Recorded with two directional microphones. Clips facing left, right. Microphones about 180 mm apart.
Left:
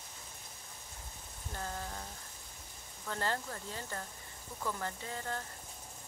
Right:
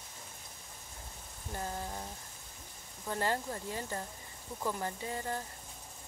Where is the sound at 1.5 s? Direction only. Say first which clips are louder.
Right 3 dB; 20° right (ahead or behind).